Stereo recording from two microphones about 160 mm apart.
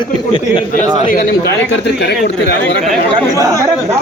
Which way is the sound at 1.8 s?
90° left.